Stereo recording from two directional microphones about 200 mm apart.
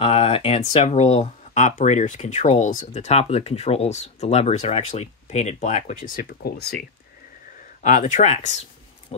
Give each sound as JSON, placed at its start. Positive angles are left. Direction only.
{"t": 0.0, "sound": "speech", "side_deg": 30}
{"t": 7.8, "sound": "speech", "side_deg": 40}